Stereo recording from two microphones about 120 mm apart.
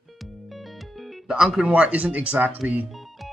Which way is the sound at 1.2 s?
5° right (ahead or behind).